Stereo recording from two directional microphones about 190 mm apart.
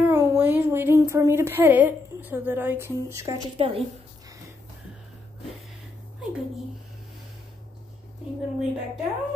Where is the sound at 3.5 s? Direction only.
30° right (ahead or behind).